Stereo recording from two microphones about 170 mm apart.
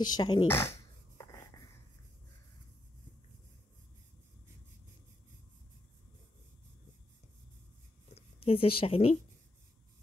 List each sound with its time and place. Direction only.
0.0 s speech: 25° left (ahead or behind)
0.5 s a sound: 15° left (ahead or behind)
8.1 s speech: 35° left (ahead or behind)